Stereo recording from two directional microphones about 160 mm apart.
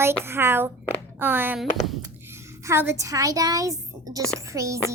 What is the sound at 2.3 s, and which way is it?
A woman's voice, 15° right (ahead or behind).